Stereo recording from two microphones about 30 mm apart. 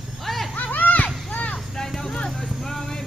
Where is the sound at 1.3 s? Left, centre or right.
Left.